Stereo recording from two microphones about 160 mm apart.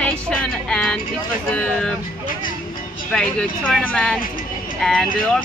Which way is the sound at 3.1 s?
Centre (ahead or behind).